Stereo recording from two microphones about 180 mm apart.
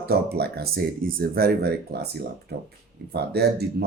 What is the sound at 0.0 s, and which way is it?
Speech, 60° right (ahead or behind).